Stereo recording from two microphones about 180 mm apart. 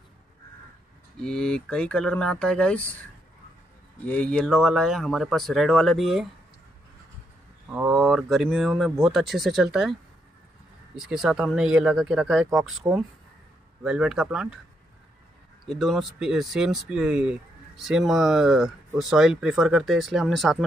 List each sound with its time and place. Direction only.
1.2 s speech: 5° left (ahead or behind)
4.1 s speech: 5° left (ahead or behind)
7.7 s speech: 5° right (ahead or behind)
11.0 s speech: 5° right (ahead or behind)
15.6 s speech: centre (ahead or behind)